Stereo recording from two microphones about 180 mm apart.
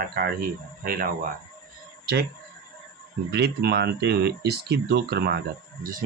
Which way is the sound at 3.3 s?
65° right (ahead or behind).